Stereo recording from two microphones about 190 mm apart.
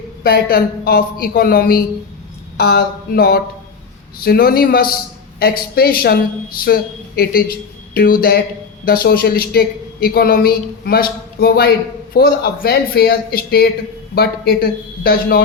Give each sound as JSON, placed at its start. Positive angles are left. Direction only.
{"t": 0.2, "sound": "a woman's voice", "side_deg": 50}
{"t": 7.9, "sound": "a woman's voice", "side_deg": 50}